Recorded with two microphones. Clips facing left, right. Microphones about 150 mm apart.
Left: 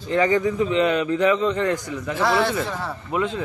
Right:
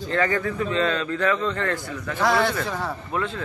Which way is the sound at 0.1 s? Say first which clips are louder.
Left 5 dB; 15° left (ahead or behind).